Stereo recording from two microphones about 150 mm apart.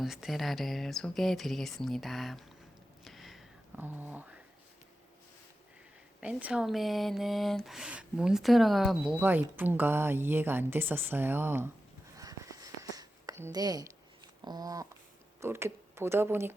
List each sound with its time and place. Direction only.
0.0 s speech: centre (ahead or behind)
3.0 s a sound: centre (ahead or behind)
3.8 s a woman's voice: 15° right (ahead or behind)
6.1 s speech: 10° right (ahead or behind)
9.2 s a woman's voice: 10° right (ahead or behind)
12.1 s a sound: 20° right (ahead or behind)
15.4 s speech: 15° right (ahead or behind)